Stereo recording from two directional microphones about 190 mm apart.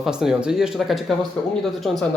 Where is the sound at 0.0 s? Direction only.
5° right (ahead or behind).